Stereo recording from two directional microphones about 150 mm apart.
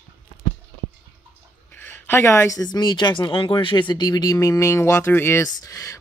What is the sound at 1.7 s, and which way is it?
Speech, 15° left (ahead or behind).